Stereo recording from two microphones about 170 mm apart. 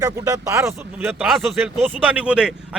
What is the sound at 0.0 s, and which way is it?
Speech, 20° right (ahead or behind).